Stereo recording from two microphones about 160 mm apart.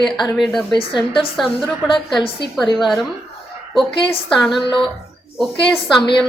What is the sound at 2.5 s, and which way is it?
Speech, centre (ahead or behind).